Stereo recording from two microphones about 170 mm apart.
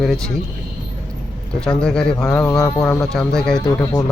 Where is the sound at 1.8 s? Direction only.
5° left (ahead or behind).